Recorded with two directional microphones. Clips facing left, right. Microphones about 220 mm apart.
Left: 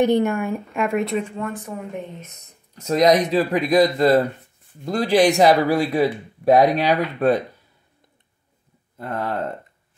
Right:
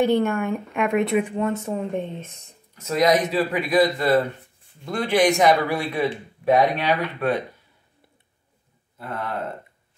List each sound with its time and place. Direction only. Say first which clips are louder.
0.0 s speech: left 2 dB; 15° left (ahead or behind)
0.4 s speech: even; centre (ahead or behind)
1.1 s speech: right 3 dB; 15° right (ahead or behind)
2.7 s a man's voice: left 3 dB; 40° left (ahead or behind)